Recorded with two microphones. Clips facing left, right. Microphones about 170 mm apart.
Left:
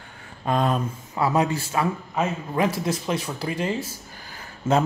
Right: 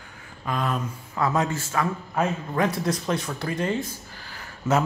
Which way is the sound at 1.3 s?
15° left (ahead or behind).